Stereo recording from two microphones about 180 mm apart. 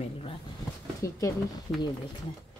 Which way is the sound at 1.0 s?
15° left (ahead or behind).